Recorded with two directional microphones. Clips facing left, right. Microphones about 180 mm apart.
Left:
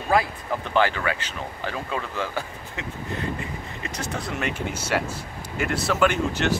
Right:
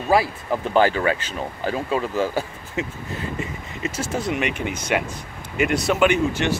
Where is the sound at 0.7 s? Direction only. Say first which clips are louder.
Right 4 dB; 40° right (ahead or behind).